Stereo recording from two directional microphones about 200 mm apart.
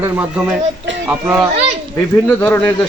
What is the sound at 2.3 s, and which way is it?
Speech, 10° left (ahead or behind).